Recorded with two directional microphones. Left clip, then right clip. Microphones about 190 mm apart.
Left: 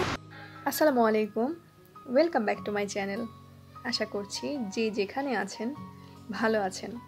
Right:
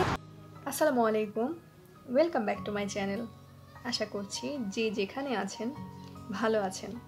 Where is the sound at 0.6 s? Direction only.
25° left (ahead or behind).